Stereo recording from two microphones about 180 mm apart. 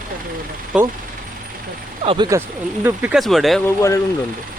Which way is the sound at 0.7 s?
5° right (ahead or behind).